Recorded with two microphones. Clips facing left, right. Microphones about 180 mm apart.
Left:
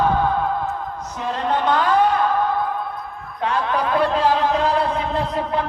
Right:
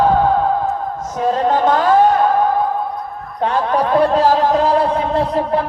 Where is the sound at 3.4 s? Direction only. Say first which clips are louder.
Right 5 dB; 35° right (ahead or behind).